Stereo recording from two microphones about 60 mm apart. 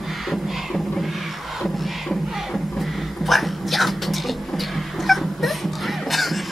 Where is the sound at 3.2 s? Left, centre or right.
Centre.